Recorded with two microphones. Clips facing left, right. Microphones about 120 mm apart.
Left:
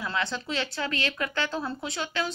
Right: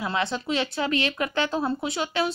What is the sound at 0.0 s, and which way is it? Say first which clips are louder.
Speech: right 4 dB; 20° right (ahead or behind).